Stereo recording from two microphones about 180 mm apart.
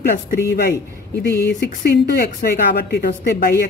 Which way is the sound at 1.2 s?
60° left (ahead or behind).